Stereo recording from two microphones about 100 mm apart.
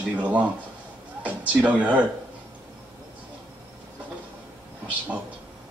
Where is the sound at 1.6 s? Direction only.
15° right (ahead or behind).